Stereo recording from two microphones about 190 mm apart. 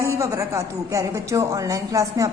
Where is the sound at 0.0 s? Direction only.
15° right (ahead or behind).